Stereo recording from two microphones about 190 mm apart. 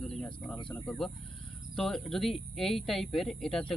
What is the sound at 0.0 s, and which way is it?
Bird, 5° left (ahead or behind).